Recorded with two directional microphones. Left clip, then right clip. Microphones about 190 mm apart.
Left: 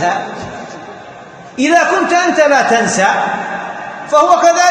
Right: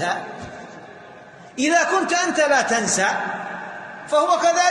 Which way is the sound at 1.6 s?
50° right (ahead or behind).